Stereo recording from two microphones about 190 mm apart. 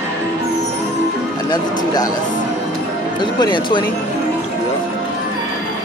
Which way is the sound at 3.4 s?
25° left (ahead or behind).